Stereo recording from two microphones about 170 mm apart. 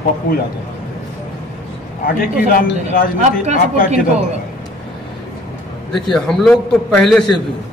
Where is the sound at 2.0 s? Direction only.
60° left (ahead or behind).